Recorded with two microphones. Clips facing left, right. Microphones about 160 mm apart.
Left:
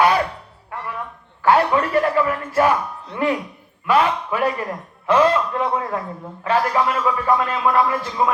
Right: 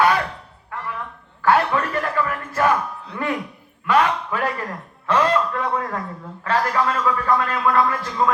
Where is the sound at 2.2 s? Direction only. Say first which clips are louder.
Left 2 dB; 15° left (ahead or behind).